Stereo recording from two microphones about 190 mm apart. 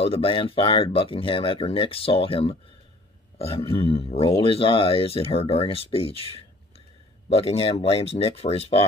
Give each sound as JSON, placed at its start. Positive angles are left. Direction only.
{"t": 0.0, "sound": "speech", "side_deg": 30}